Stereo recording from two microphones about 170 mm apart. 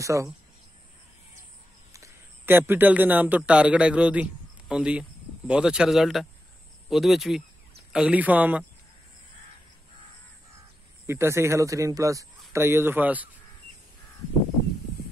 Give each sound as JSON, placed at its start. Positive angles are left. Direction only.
{"t": 0.0, "sound": "speech", "side_deg": -20}
{"t": 2.0, "sound": "a man's voice", "side_deg": -15}
{"t": 11.1, "sound": "speech", "side_deg": -15}